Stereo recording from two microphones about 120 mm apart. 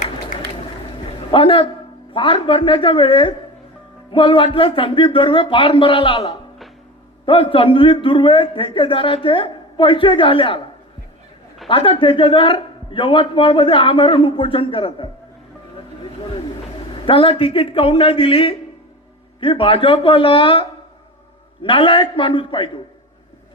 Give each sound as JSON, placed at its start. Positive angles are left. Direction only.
{"t": 1.3, "sound": "a man's voice", "side_deg": 45}
{"t": 11.7, "sound": "a man's voice", "side_deg": 45}
{"t": 16.9, "sound": "a man's voice", "side_deg": 45}